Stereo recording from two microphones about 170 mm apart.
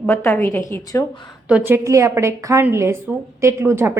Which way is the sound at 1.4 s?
10° right (ahead or behind).